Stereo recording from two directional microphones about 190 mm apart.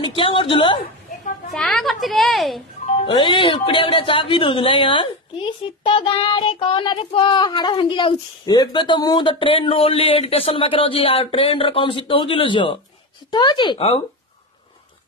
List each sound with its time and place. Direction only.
0.0 s a sound: 25° left (ahead or behind)
1.5 s a woman's voice: centre (ahead or behind)
3.1 s speech: 25° left (ahead or behind)